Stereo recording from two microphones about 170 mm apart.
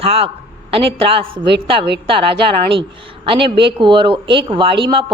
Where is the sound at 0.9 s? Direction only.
30° right (ahead or behind).